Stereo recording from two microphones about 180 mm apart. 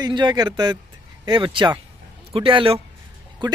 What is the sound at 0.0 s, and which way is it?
Speech, 25° right (ahead or behind).